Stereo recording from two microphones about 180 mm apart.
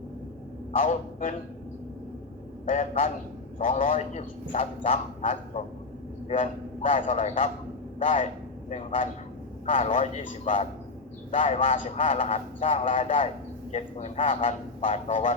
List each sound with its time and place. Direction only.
0.8 s a man's voice: 45° left (ahead or behind)
2.6 s a man's voice: 40° left (ahead or behind)